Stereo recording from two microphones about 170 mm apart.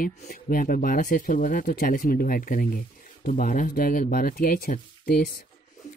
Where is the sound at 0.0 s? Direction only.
55° left (ahead or behind).